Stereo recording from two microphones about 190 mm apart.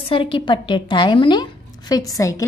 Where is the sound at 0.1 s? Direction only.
25° left (ahead or behind).